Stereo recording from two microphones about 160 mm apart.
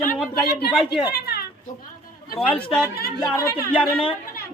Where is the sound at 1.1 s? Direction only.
75° left (ahead or behind).